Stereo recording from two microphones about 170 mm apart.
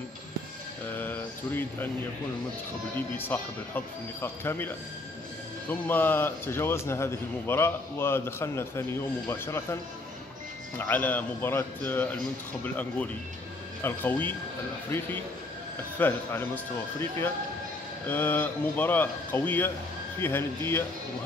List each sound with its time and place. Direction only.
0.9 s a sound: 10° left (ahead or behind)
3.2 s a man's voice: 10° left (ahead or behind)
5.7 s a man's voice: 10° left (ahead or behind)
10.8 s a man's voice: 10° left (ahead or behind)
16.0 s a man's voice: 10° left (ahead or behind)